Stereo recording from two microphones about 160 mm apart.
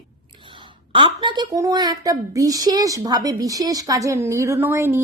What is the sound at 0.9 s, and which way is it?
A woman's voice, 30° right (ahead or behind).